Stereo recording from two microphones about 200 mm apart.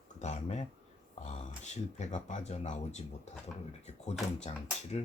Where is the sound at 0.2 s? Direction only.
35° left (ahead or behind).